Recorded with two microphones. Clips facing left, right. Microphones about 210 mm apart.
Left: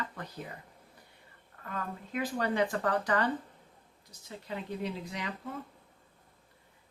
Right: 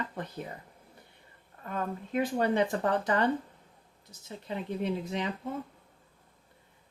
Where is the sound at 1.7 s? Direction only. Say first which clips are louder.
Right 5 dB; 25° right (ahead or behind).